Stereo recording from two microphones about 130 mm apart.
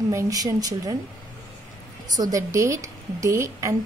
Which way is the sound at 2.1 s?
30° right (ahead or behind).